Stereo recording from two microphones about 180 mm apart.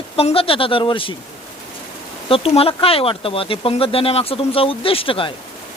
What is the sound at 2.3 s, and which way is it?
Speech, 30° left (ahead or behind).